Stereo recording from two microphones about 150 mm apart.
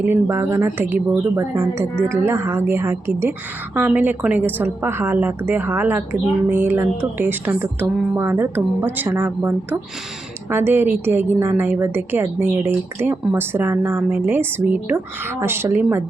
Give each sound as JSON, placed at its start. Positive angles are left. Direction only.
{"t": 0.0, "sound": "a woman's voice", "side_deg": -15}